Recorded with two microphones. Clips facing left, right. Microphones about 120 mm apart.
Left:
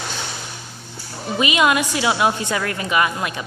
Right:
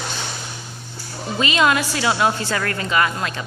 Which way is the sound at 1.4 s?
15° left (ahead or behind).